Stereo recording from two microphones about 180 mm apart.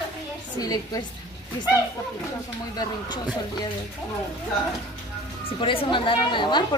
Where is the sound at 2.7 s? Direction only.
20° left (ahead or behind).